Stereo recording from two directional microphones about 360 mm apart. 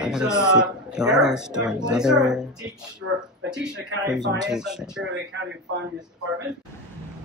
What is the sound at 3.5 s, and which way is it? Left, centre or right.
A man's voice, centre.